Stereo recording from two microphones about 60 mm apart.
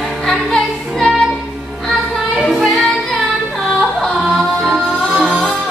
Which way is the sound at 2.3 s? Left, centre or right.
Centre.